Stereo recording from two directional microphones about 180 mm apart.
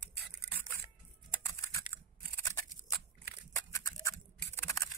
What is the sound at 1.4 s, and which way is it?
Typing, 15° left (ahead or behind).